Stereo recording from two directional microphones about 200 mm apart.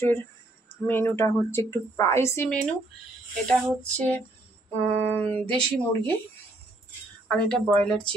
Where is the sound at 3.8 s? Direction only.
5° left (ahead or behind).